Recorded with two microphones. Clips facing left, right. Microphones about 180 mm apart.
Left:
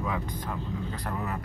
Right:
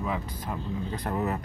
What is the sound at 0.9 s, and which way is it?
Speech, 25° right (ahead or behind).